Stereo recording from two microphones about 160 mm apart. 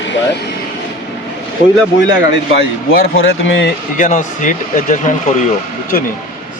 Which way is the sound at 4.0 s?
55° left (ahead or behind).